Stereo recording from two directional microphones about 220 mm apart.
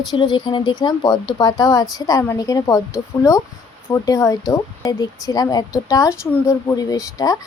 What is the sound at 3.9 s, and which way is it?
Speech, 15° left (ahead or behind).